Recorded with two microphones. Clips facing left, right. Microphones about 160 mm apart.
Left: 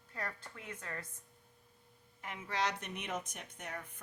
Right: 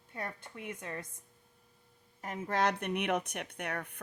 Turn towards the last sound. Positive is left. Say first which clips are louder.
# right 7 dB
turn(degrees=-65)  # may be behind; listen again after turning